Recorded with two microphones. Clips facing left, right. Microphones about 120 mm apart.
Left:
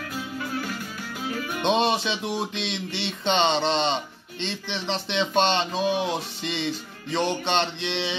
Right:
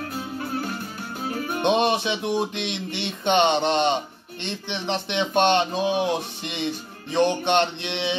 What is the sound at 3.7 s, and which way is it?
Music, 60° right (ahead or behind).